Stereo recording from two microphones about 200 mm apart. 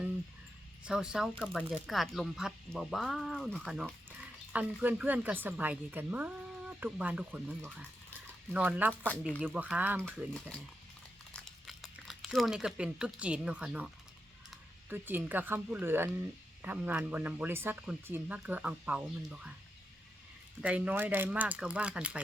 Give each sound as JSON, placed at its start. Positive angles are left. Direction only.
{"t": 0.9, "sound": "a woman's voice", "side_deg": -5}
{"t": 8.5, "sound": "a woman's voice", "side_deg": -10}
{"t": 9.0, "sound": "speech", "side_deg": 5}
{"t": 9.4, "sound": "a woman's voice", "side_deg": -10}
{"t": 11.3, "sound": "a woman's voice", "side_deg": 0}
{"t": 20.6, "sound": "a woman's voice", "side_deg": -5}